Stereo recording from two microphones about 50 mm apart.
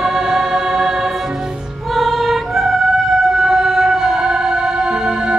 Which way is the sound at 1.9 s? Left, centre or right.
Centre.